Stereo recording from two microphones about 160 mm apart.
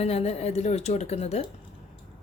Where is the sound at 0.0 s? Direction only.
40° left (ahead or behind).